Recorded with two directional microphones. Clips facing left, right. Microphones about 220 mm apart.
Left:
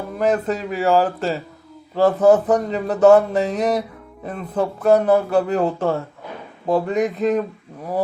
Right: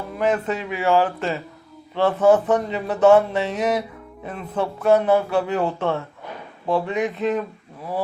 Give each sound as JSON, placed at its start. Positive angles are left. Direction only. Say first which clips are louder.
{"t": 0.2, "sound": "speech", "louder": "left 2 dB", "side_deg": 40}